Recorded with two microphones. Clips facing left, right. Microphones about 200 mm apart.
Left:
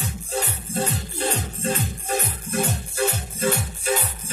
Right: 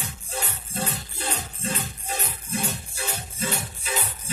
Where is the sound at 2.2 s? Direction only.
55° left (ahead or behind).